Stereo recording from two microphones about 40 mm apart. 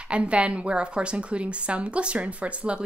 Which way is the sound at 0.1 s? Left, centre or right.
Right.